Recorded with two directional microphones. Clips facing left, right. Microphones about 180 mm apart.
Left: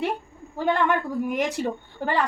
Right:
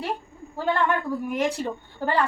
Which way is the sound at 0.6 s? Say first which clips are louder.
Left 1 dB; 15° left (ahead or behind).